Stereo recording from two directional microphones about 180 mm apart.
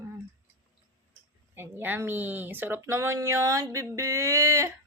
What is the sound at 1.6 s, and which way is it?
Speech, 10° right (ahead or behind).